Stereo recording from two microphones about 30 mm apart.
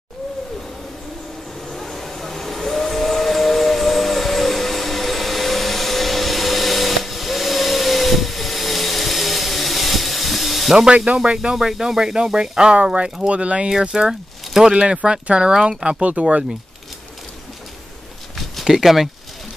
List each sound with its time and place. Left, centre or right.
1.7 s steam whistle: centre
11.1 s speech: right
13.3 s speech: right
13.7 s speech: right
16.0 s speech: right
18.7 s speech: centre